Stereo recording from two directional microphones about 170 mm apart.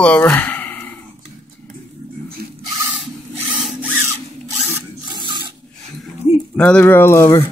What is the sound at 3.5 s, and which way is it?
Tools, 5° right (ahead or behind).